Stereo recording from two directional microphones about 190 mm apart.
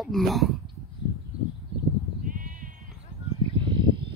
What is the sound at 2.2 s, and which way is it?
Sheep, 45° right (ahead or behind).